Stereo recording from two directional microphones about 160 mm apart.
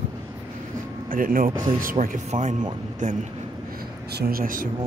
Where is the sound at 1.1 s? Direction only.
60° right (ahead or behind).